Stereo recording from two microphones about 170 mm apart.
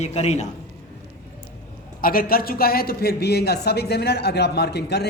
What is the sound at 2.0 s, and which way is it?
A man's voice, 60° left (ahead or behind).